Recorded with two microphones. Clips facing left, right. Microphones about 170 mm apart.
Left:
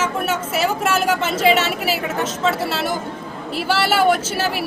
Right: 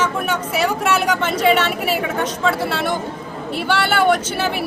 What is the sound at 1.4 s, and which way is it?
Speech, 5° left (ahead or behind).